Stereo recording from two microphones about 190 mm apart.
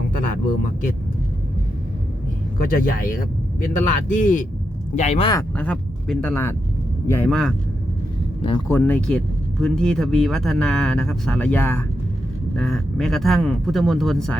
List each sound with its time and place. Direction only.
0.2 s speech: 45° left (ahead or behind)
2.6 s speech: 50° left (ahead or behind)
5.3 s speech: 10° left (ahead or behind)
8.4 s speech: 25° left (ahead or behind)
8.6 s speech: 10° left (ahead or behind)